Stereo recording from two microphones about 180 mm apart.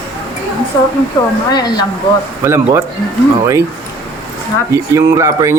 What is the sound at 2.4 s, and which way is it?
Speech, 15° right (ahead or behind).